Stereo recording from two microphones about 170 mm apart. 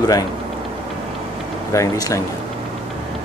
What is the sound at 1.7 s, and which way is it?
Speech, 20° left (ahead or behind).